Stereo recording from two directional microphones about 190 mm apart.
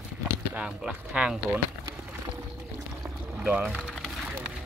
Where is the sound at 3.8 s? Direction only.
Centre (ahead or behind).